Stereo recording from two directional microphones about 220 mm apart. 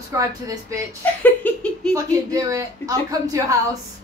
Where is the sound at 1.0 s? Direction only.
5° left (ahead or behind).